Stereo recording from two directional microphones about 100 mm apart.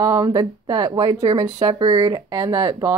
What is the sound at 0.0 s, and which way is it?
Speech, 35° right (ahead or behind).